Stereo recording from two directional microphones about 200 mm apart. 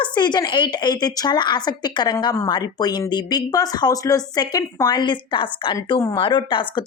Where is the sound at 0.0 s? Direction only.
20° left (ahead or behind).